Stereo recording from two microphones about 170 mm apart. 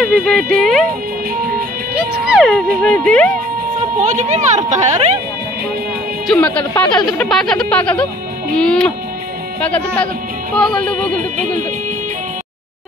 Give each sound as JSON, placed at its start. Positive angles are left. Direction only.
{"t": 0.0, "sound": "speech", "side_deg": 0}
{"t": 2.0, "sound": "a sound", "side_deg": -5}
{"t": 4.0, "sound": "speech", "side_deg": -45}
{"t": 6.2, "sound": "speech", "side_deg": 10}
{"t": 6.7, "sound": "speech", "side_deg": 20}
{"t": 7.2, "sound": "speech", "side_deg": 5}